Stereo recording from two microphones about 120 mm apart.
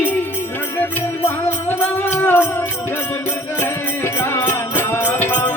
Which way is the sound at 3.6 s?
20° left (ahead or behind).